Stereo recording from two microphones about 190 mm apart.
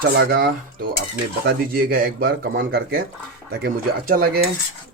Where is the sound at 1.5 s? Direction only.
50° right (ahead or behind).